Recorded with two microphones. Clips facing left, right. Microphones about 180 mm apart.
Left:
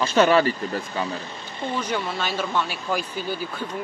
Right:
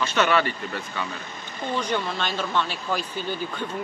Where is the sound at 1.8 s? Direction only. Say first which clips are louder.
Right 1 dB; 5° left (ahead or behind).